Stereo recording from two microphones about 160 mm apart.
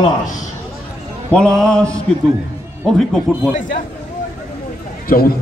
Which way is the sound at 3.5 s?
50° left (ahead or behind).